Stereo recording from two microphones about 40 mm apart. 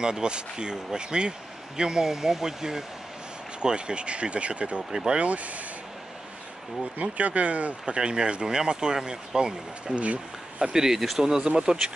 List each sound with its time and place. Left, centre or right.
0.0 s speech: centre
3.6 s speech: right
4.9 s speech: centre
5.2 s speech: right
6.8 s speech: right
7.8 s speech: right